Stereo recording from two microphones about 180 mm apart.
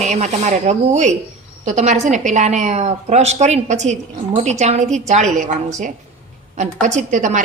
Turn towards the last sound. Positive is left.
turn(degrees=-45)  # may be behind; listen again after turning